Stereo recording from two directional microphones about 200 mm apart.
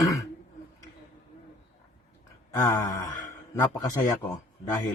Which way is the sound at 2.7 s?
15° left (ahead or behind).